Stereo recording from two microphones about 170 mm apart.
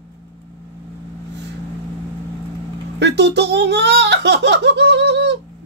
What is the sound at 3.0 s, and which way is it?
Speech, 90° right.